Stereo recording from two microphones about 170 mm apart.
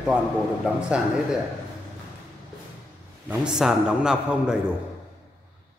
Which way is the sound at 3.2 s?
5° right (ahead or behind).